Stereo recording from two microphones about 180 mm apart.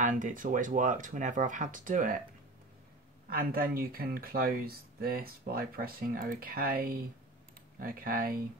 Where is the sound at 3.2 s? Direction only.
55° right (ahead or behind).